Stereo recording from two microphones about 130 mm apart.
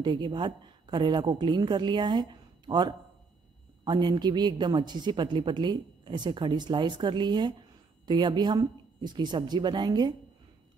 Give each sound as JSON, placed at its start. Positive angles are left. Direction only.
{"t": 0.0, "sound": "speech", "side_deg": -35}